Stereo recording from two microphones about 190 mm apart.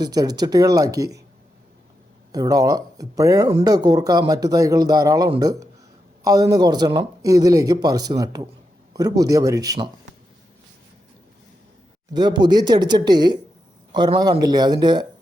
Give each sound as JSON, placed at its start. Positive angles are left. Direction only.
{"t": 0.0, "sound": "speech", "side_deg": -20}
{"t": 2.3, "sound": "speech", "side_deg": -20}
{"t": 12.1, "sound": "speech", "side_deg": -20}